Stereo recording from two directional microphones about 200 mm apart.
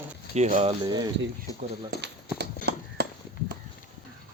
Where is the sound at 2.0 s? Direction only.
55° right (ahead or behind).